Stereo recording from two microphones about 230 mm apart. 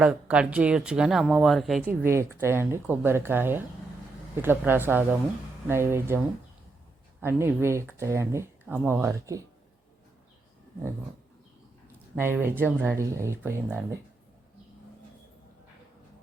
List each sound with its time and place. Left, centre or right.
0.0 s speech: centre
12.1 s speech: centre